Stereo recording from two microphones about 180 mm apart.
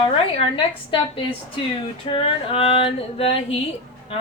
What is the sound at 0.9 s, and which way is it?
Speech, 25° left (ahead or behind).